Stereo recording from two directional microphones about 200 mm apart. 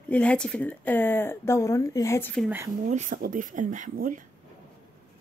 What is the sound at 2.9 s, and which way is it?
Speech, 40° right (ahead or behind).